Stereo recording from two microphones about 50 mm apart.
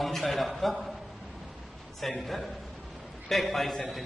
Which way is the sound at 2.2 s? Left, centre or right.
Centre.